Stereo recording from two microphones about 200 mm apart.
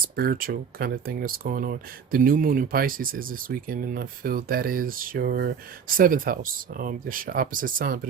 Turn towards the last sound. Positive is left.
turn(degrees=-45)  # may be behind; listen again after turning